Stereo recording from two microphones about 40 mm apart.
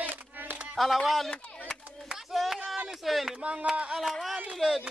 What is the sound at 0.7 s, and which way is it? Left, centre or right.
Speech, centre.